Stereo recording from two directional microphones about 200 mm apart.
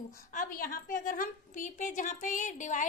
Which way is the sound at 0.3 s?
40° left (ahead or behind).